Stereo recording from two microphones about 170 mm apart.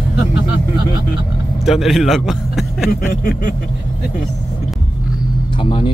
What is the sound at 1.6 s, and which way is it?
A man's voice, centre (ahead or behind).